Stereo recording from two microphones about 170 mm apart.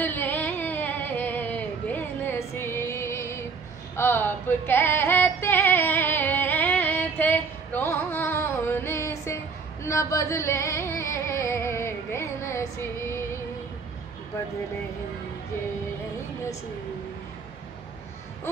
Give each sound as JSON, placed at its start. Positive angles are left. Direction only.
{"t": 0.0, "sound": "music", "side_deg": 10}